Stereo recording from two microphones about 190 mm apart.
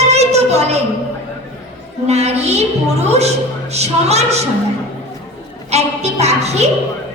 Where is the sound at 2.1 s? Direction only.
35° right (ahead or behind).